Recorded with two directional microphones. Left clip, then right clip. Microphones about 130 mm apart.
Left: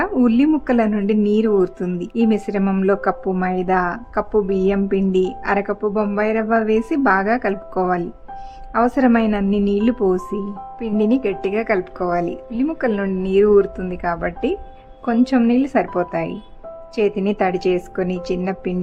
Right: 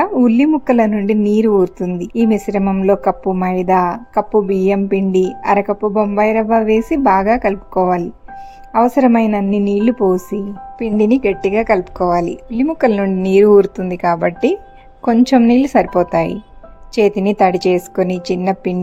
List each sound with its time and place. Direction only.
0.0 s a sound: 20° right (ahead or behind)
1.0 s a woman's voice: 20° right (ahead or behind)
10.8 s a woman's voice: 30° right (ahead or behind)